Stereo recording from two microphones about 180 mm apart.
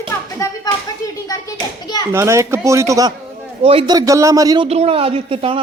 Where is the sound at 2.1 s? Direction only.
15° right (ahead or behind).